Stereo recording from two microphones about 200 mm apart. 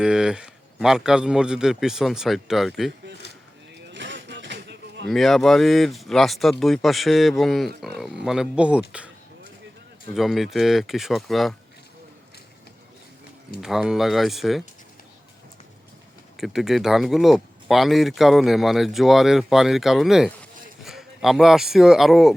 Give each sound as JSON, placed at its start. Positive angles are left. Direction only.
{"t": 0.0, "sound": "speech", "side_deg": -5}
{"t": 3.9, "sound": "a sound", "side_deg": -60}
{"t": 5.0, "sound": "speech", "side_deg": 0}
{"t": 10.2, "sound": "speech", "side_deg": 0}
{"t": 13.6, "sound": "speech", "side_deg": 0}
{"t": 16.4, "sound": "speech", "side_deg": 0}